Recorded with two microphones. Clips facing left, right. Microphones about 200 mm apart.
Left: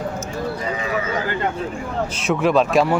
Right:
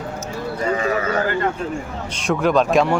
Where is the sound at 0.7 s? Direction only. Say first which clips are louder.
Right 4 dB; 50° right (ahead or behind).